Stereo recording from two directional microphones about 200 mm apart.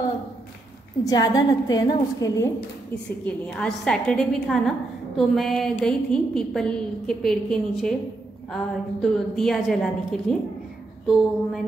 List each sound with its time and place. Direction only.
1.0 s a woman's voice: 20° left (ahead or behind)
3.3 s a woman's voice: 5° left (ahead or behind)